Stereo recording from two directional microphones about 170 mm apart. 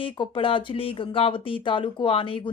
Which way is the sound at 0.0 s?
30° left (ahead or behind).